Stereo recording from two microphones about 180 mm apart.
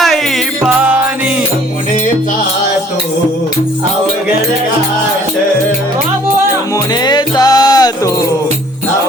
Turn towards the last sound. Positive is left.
turn(degrees=20)  # may be behind; listen again after turning